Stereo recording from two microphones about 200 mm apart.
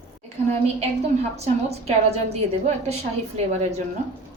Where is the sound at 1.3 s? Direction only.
30° right (ahead or behind).